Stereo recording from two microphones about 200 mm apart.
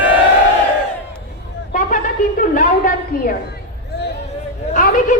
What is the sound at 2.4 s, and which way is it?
Speech, 45° left (ahead or behind).